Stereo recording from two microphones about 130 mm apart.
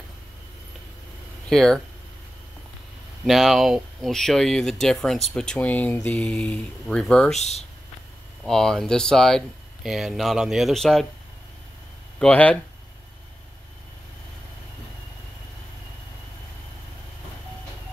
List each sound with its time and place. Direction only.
1.5 s speech: centre (ahead or behind)
3.3 s speech: centre (ahead or behind)
7.3 s speech: 60° left (ahead or behind)
8.5 s speech: 5° left (ahead or behind)
12.2 s speech: 10° left (ahead or behind)